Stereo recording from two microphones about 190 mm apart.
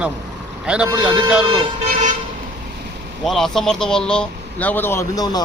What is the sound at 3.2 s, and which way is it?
A man's voice, centre (ahead or behind).